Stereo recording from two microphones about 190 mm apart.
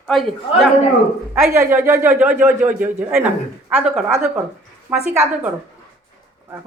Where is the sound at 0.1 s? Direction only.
Centre (ahead or behind).